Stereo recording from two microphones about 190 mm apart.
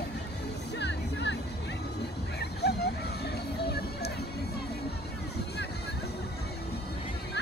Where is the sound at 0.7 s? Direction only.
65° left (ahead or behind).